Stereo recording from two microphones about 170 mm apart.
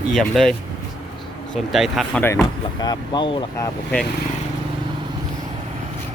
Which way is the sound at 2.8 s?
25° left (ahead or behind).